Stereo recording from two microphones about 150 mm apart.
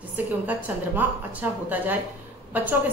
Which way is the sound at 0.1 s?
10° right (ahead or behind).